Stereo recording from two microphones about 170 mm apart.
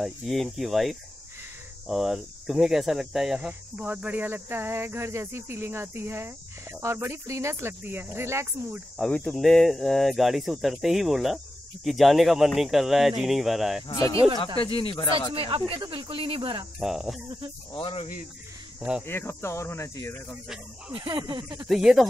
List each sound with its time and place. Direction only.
0.0 s speech: centre (ahead or behind)
8.9 s speech: centre (ahead or behind)
13.8 s speech: 20° left (ahead or behind)
15.3 s speech: 30° right (ahead or behind)
16.8 s speech: centre (ahead or behind)
17.7 s speech: 30° left (ahead or behind)
18.8 s speech: 5° right (ahead or behind)
19.0 s speech: 15° left (ahead or behind)
20.9 s speech: 30° right (ahead or behind)
21.6 s speech: centre (ahead or behind)